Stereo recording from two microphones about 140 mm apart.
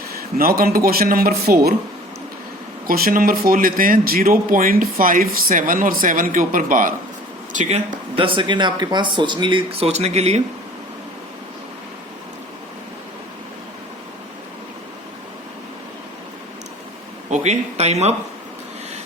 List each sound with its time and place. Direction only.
0.3 s speech: 90° right
2.8 s speech: 90° right; by 6.9 s 70° right (ahead or behind)
7.5 s speech: 60° right (ahead or behind)
8.1 s speech: 40° right (ahead or behind)
17.2 s speech: 55° right (ahead or behind)